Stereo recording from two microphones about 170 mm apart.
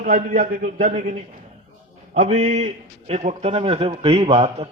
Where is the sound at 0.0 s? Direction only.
50° right (ahead or behind).